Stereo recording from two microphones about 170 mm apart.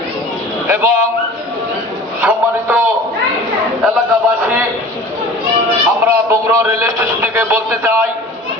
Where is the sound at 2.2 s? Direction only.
10° right (ahead or behind).